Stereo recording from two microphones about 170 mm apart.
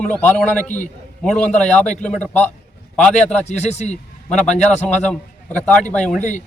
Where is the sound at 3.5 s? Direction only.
40° left (ahead or behind).